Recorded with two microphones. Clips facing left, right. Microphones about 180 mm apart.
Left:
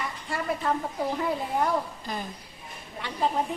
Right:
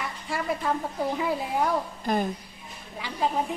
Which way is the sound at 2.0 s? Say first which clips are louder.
Right 9 dB; 50° right (ahead or behind).